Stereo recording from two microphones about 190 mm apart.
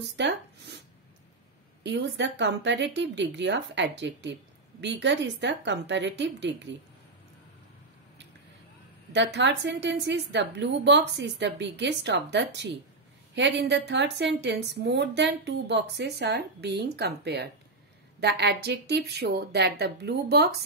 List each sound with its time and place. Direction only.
0.1 s zipper: 65° right (ahead or behind)
1.8 s speech: 70° right (ahead or behind)
9.1 s a woman's voice: 65° right (ahead or behind)